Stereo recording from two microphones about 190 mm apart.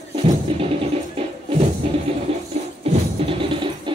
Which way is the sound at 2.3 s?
30° right (ahead or behind).